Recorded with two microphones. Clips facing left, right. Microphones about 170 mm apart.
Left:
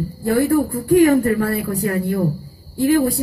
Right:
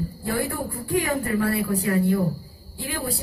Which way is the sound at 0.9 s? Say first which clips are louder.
Left 11 dB; 45° left (ahead or behind).